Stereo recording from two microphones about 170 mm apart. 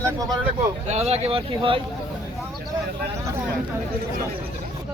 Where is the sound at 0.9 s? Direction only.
40° right (ahead or behind).